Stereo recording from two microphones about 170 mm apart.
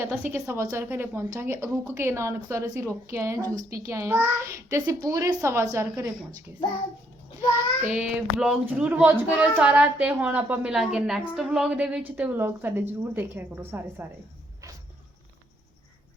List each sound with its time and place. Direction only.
0.0 s a woman's voice: 10° right (ahead or behind)
7.9 s speech: 5° right (ahead or behind)